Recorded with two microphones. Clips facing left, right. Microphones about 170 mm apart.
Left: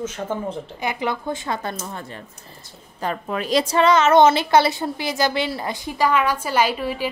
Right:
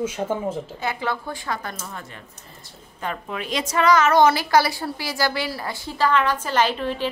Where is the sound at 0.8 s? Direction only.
15° left (ahead or behind).